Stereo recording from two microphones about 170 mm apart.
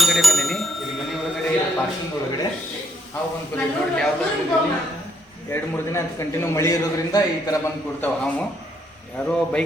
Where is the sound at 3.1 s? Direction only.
5° left (ahead or behind).